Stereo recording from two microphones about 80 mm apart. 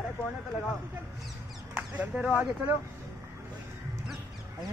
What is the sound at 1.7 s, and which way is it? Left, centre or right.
Speech, centre.